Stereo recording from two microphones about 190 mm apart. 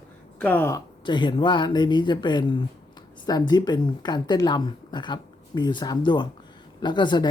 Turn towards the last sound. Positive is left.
turn(degrees=25)  # may be behind; listen again after turning